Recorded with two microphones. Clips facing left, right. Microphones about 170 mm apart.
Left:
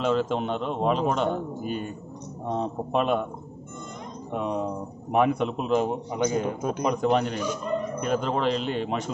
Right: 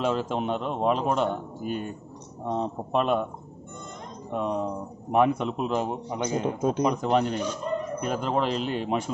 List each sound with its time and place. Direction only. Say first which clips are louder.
0.0 s a man's voice: left 2 dB; 5° right (ahead or behind)
4.3 s a man's voice: even; 5° left (ahead or behind)
6.2 s speech: even; 25° right (ahead or behind)
6.8 s a man's voice: left 2 dB; centre (ahead or behind)